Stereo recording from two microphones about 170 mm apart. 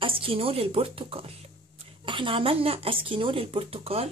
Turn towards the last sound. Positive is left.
turn(degrees=-35)  # may be behind; listen again after turning